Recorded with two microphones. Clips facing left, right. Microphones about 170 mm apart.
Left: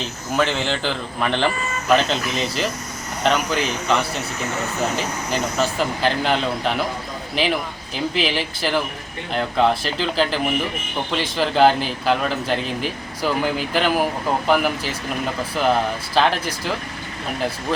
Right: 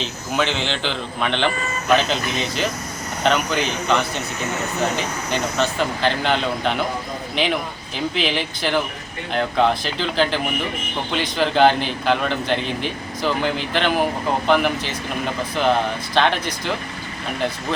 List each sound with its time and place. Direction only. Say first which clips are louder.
0.0 s a man's voice: left 1 dB; 5° left (ahead or behind)